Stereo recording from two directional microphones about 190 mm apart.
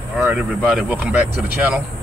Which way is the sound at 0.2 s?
10° right (ahead or behind).